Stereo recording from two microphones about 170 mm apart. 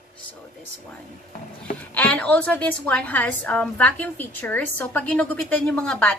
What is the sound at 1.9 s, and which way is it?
A woman's voice, 10° left (ahead or behind).